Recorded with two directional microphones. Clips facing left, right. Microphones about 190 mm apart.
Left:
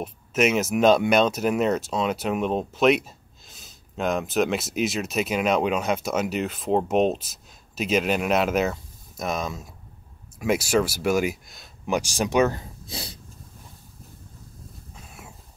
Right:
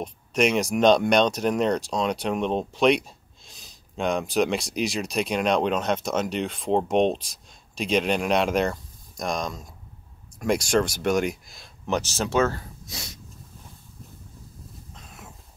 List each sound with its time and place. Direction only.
0.0 s speech: 5° left (ahead or behind)
11.8 s speech: 10° left (ahead or behind)
12.8 s dog: 30° left (ahead or behind)
15.0 s a sound: 5° left (ahead or behind)